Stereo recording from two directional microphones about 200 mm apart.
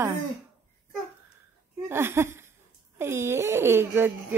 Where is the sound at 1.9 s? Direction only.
10° right (ahead or behind).